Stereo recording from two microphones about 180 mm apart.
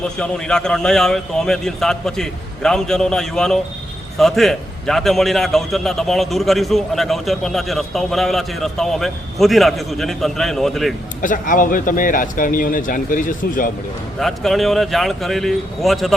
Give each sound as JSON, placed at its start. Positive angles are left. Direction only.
{"t": 0.0, "sound": "a man's voice", "side_deg": 5}
{"t": 11.2, "sound": "speech", "side_deg": 45}
{"t": 14.2, "sound": "a man's voice", "side_deg": 0}